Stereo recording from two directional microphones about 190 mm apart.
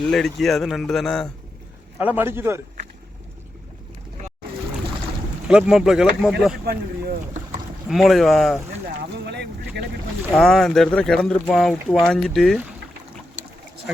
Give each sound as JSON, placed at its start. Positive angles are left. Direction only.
{"t": 0.0, "sound": "speech", "side_deg": 0}
{"t": 2.0, "sound": "a man's voice", "side_deg": -10}
{"t": 5.5, "sound": "speech", "side_deg": -5}
{"t": 6.7, "sound": "a sound", "side_deg": -55}
{"t": 7.9, "sound": "speech", "side_deg": 0}
{"t": 9.0, "sound": "boat", "side_deg": -60}
{"t": 10.3, "sound": "speech", "side_deg": 0}